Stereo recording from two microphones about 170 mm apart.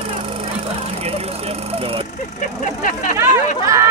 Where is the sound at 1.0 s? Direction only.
35° right (ahead or behind).